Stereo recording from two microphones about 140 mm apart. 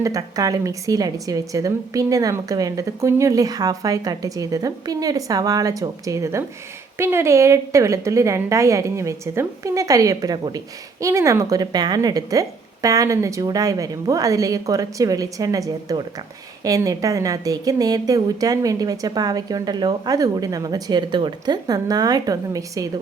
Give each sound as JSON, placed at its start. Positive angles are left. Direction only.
{"t": 0.0, "sound": "a woman's voice", "side_deg": -25}